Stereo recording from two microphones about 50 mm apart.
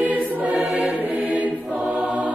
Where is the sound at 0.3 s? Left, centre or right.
Right.